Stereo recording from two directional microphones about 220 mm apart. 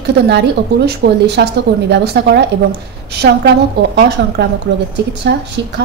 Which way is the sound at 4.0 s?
50° right (ahead or behind).